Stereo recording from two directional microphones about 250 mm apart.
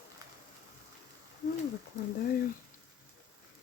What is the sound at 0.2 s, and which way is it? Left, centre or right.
Rain, centre.